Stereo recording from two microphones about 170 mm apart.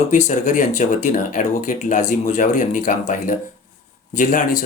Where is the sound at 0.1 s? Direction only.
45° left (ahead or behind).